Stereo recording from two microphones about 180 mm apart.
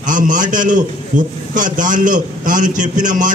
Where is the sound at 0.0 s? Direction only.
45° right (ahead or behind).